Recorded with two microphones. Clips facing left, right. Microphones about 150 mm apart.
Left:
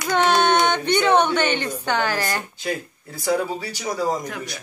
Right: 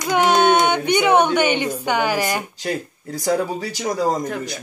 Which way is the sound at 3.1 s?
45° right (ahead or behind).